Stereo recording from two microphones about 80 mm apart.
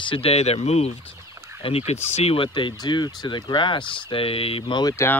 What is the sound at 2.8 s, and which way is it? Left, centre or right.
Speech, left.